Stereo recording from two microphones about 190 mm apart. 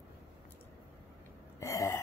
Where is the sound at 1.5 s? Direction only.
15° left (ahead or behind).